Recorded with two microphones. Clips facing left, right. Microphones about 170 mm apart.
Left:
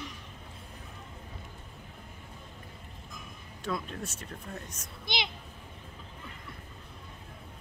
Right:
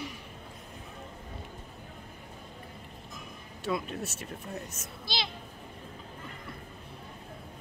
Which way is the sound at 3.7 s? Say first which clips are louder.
Right 3 dB; 5° right (ahead or behind).